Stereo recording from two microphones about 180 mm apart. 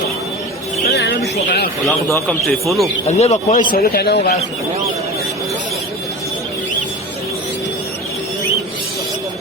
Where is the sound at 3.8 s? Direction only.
60° left (ahead or behind).